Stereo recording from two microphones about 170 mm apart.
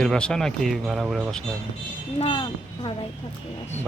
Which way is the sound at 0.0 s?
5° left (ahead or behind).